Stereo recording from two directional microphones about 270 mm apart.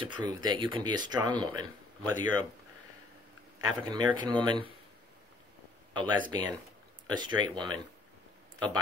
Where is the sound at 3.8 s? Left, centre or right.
Centre.